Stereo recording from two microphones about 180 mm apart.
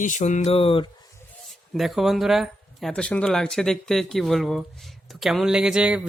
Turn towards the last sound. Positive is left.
turn(degrees=-5)  # may be behind; listen again after turning